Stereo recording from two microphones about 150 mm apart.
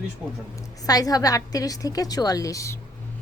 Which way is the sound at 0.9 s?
25° left (ahead or behind).